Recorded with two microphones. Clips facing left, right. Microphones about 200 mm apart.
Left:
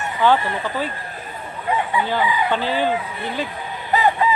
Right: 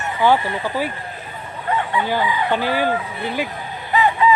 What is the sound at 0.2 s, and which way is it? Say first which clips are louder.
Speech: right 1 dB; 10° right (ahead or behind).